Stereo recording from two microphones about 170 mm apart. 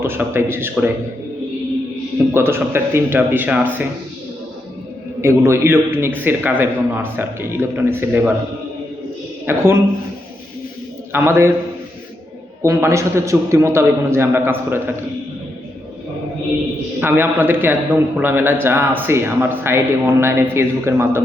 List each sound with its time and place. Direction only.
0.0 s a man's voice: 15° right (ahead or behind)
2.3 s a man's voice: 15° right (ahead or behind)
5.2 s a man's voice: 15° right (ahead or behind)
9.5 s a man's voice: 15° right (ahead or behind)
11.1 s a man's voice: 15° right (ahead or behind)
12.6 s a man's voice: 15° right (ahead or behind)
17.0 s a man's voice: 15° right (ahead or behind)